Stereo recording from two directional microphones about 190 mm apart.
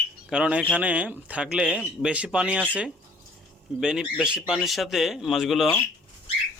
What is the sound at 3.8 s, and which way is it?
Speech, 5° right (ahead or behind).